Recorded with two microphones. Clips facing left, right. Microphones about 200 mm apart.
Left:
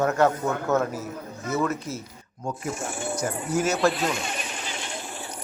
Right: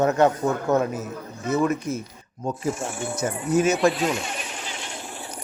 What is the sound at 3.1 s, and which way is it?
Speech, 20° right (ahead or behind).